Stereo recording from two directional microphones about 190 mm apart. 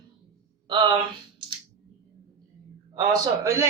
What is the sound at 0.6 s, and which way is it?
Speech, 25° right (ahead or behind).